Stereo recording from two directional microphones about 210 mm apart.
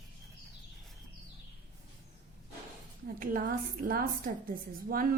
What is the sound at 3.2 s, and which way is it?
A woman's voice, 40° right (ahead or behind).